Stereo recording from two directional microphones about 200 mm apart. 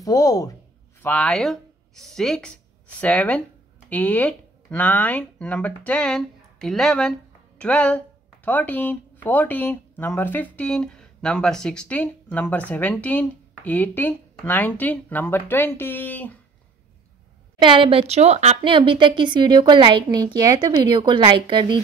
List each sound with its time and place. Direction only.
0.0 s speech: 15° left (ahead or behind)
1.0 s speech: 5° left (ahead or behind)
17.6 s a woman's voice: 25° right (ahead or behind)